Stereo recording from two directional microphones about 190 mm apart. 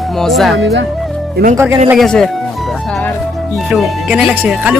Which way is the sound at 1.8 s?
Centre (ahead or behind).